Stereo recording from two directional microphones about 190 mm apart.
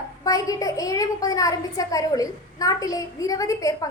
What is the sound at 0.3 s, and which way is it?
A child's voice, 20° left (ahead or behind).